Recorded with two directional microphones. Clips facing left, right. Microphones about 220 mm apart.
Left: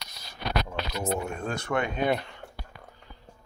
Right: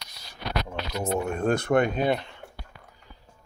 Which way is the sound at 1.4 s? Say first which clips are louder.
Right 7 dB; 55° right (ahead or behind).